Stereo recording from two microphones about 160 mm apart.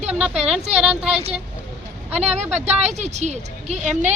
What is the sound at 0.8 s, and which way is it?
Speech, 5° right (ahead or behind).